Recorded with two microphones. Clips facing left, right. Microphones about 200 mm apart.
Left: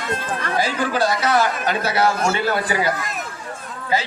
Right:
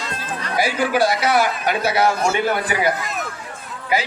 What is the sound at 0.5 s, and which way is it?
A man's voice, 10° right (ahead or behind).